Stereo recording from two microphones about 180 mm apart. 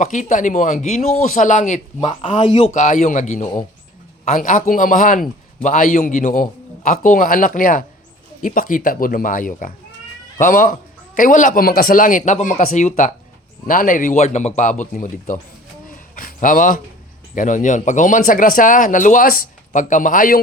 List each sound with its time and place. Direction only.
0.0 s a man's voice: 45° left (ahead or behind)
2.0 s a man's voice: 30° left (ahead or behind); by 15.4 s 45° left (ahead or behind)
15.9 s a sound: 50° left (ahead or behind)
17.3 s a man's voice: 45° left (ahead or behind)